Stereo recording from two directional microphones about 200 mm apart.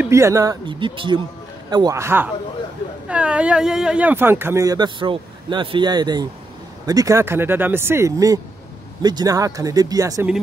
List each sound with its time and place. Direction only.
0.0 s speech: 15° right (ahead or behind)